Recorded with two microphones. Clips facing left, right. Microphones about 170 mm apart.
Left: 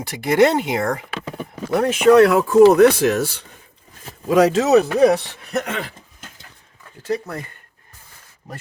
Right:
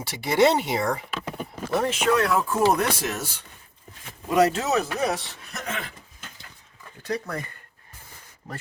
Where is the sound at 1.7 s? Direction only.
60° left (ahead or behind).